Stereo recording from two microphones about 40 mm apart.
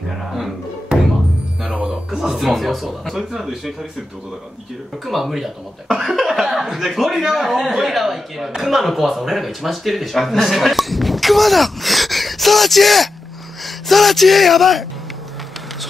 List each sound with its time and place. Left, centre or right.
1.6 s music: right
2.0 s speech: centre
5.0 s speech: centre